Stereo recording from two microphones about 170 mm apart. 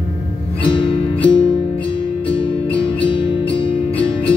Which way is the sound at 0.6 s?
30° left (ahead or behind).